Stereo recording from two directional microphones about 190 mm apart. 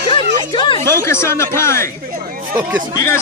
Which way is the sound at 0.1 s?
25° left (ahead or behind).